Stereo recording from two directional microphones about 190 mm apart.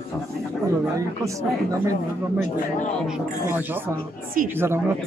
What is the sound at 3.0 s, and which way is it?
Speech, 5° right (ahead or behind).